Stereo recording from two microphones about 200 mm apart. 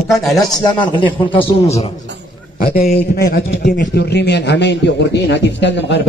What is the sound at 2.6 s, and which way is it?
A man's voice, 45° left (ahead or behind).